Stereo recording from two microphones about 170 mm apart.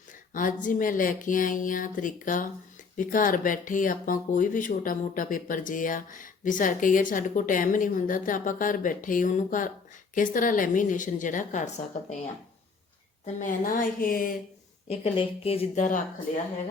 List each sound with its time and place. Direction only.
0.1 s speech: 50° left (ahead or behind)
13.2 s speech: 50° left (ahead or behind)
14.8 s speech: 35° left (ahead or behind); by 16.4 s 50° left (ahead or behind)